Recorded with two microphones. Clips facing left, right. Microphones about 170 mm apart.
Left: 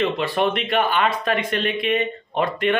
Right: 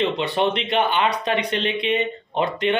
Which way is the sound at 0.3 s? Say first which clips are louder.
Even; 25° right (ahead or behind).